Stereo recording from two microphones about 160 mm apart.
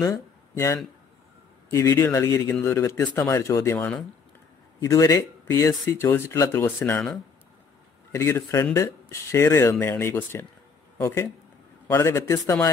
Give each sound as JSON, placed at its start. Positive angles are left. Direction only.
{"t": 0.0, "sound": "speech", "side_deg": 20}
{"t": 8.1, "sound": "speech", "side_deg": 15}